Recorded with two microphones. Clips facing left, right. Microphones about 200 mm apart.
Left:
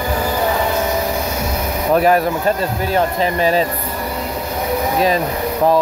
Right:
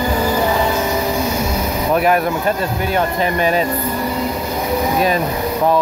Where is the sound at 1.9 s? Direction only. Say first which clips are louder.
Left 2 dB; 35° left (ahead or behind).